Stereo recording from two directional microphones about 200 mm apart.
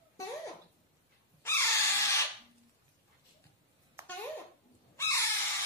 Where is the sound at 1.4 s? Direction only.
15° left (ahead or behind).